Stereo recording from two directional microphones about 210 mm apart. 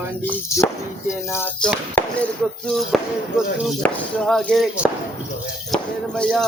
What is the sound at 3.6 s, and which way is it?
Speech, centre (ahead or behind).